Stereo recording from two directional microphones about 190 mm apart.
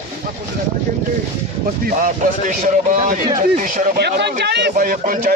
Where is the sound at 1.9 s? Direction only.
45° right (ahead or behind).